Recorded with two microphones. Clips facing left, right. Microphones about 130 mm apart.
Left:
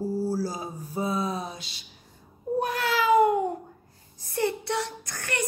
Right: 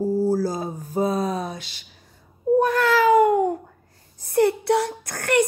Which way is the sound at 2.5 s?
50° right (ahead or behind).